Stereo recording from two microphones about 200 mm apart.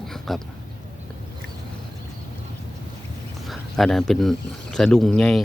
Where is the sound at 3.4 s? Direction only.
Centre (ahead or behind).